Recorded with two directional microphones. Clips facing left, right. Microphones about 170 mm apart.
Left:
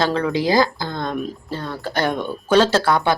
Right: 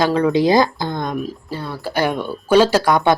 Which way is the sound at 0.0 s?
15° right (ahead or behind).